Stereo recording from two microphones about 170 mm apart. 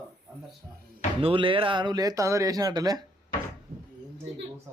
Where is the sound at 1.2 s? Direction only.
30° right (ahead or behind).